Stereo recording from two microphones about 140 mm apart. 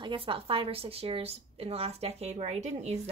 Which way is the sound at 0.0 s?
35° right (ahead or behind).